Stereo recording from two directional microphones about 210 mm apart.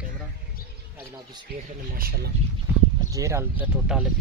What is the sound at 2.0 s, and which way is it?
Speech, 45° right (ahead or behind).